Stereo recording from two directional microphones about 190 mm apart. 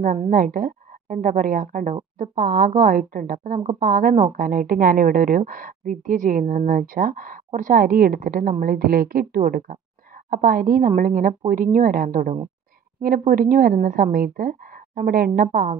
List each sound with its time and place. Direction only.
0.0 s a woman's voice: 40° right (ahead or behind)